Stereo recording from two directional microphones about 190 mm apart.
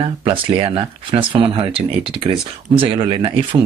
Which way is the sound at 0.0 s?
30° right (ahead or behind).